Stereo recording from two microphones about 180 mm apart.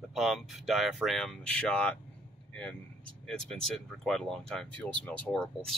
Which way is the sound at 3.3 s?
Centre (ahead or behind).